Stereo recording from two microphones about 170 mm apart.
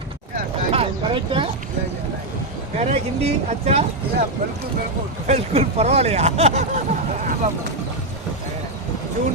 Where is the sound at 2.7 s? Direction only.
40° right (ahead or behind).